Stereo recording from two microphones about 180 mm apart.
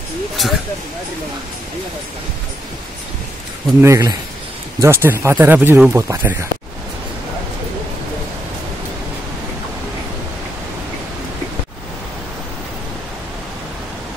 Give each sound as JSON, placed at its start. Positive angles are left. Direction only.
{"t": 0.4, "sound": "speech", "side_deg": 0}
{"t": 3.8, "sound": "speech", "side_deg": -15}